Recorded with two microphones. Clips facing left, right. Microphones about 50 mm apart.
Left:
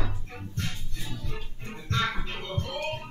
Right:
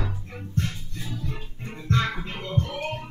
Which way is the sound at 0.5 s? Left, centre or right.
Centre.